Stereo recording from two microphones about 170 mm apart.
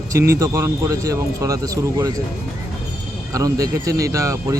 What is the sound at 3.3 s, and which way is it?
Speech, 20° right (ahead or behind).